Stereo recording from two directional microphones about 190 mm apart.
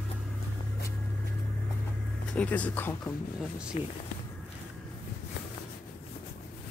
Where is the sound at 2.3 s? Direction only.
5° left (ahead or behind).